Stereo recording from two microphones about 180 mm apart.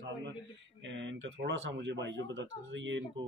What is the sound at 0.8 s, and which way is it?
Speech, 90° right.